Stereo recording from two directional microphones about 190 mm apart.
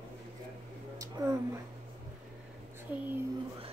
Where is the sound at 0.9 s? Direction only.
15° right (ahead or behind).